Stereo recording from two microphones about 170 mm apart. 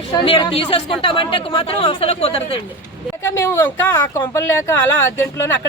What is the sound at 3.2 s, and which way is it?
Speech, 20° left (ahead or behind).